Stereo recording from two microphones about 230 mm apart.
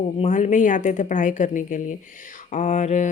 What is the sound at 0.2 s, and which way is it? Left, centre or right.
Speech, left.